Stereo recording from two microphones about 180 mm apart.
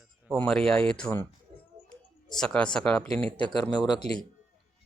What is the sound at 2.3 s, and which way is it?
Speech, 5° left (ahead or behind).